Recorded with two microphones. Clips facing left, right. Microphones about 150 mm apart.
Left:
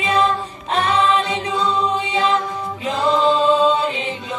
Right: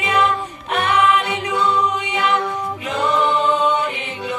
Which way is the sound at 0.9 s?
30° left (ahead or behind).